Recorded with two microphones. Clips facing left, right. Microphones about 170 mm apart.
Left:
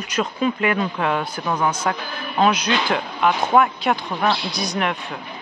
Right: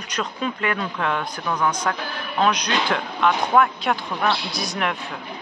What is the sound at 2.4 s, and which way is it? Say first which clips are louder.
A man's voice: left 2 dB; 5° left (ahead or behind).